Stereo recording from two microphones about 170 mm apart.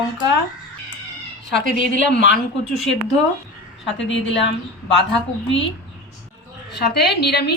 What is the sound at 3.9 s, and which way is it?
Speech, 90° left.